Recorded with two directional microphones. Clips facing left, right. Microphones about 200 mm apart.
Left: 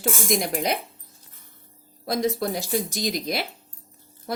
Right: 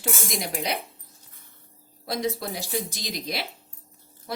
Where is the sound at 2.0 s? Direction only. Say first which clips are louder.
Left 4 dB; 50° left (ahead or behind).